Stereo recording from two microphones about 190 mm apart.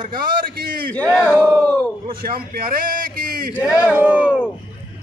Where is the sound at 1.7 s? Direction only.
5° left (ahead or behind).